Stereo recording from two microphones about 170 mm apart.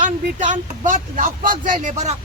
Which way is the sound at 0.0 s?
50° right (ahead or behind).